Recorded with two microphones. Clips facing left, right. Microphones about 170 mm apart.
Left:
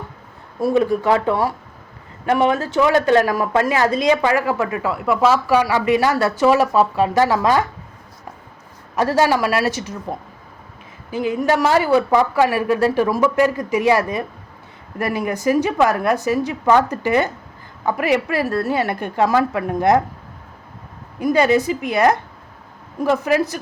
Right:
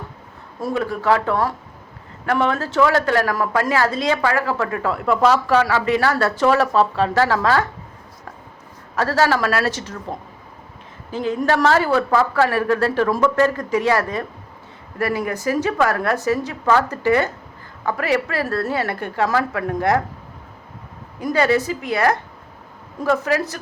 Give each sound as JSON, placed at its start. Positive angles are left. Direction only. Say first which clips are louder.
{"t": 0.7, "sound": "a woman's voice", "louder": "left 3 dB", "side_deg": 20}
{"t": 9.0, "sound": "a woman's voice", "louder": "left 2 dB", "side_deg": 15}
{"t": 21.2, "sound": "a woman's voice", "louder": "left 3 dB", "side_deg": 15}